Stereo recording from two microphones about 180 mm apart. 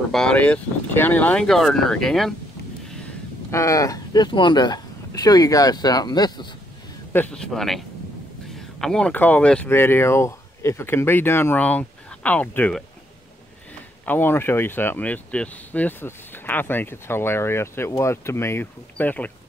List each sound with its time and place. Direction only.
0.1 s speech: 5° left (ahead or behind)
3.5 s speech: 15° left (ahead or behind)
7.1 s speech: 10° left (ahead or behind)
14.0 s speech: 10° left (ahead or behind)